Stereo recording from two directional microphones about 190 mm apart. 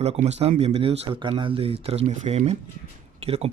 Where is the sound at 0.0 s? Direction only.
35° right (ahead or behind).